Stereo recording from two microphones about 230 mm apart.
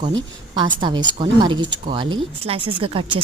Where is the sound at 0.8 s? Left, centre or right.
Centre.